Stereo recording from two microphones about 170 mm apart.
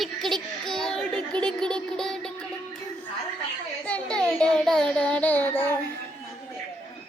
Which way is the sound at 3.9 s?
5° left (ahead or behind).